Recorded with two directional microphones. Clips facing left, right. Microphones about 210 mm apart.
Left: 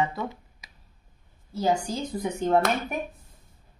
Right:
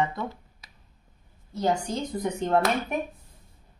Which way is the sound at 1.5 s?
5° left (ahead or behind).